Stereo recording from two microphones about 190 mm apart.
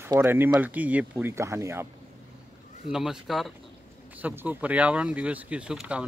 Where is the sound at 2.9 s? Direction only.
Centre (ahead or behind).